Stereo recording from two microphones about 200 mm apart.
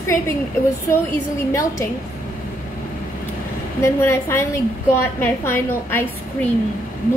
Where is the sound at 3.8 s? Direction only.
15° left (ahead or behind).